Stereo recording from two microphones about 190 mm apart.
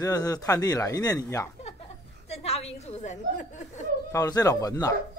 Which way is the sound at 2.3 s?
35° left (ahead or behind).